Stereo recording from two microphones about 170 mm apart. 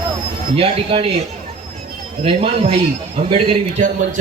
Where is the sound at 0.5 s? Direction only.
30° right (ahead or behind).